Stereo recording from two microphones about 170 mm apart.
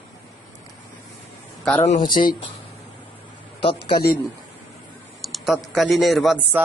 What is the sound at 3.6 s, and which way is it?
Speech, 30° left (ahead or behind).